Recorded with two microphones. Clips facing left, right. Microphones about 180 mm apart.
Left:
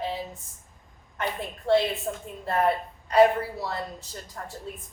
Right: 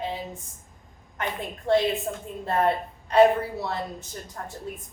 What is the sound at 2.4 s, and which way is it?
Speech, 25° right (ahead or behind).